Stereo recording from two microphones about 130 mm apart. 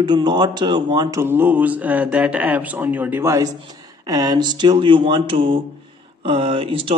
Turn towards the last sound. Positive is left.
turn(degrees=-45)  # may be behind; listen again after turning